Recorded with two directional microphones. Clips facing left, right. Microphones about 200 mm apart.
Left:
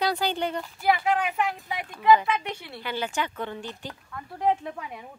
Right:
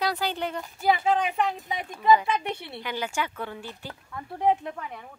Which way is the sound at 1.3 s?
25° right (ahead or behind).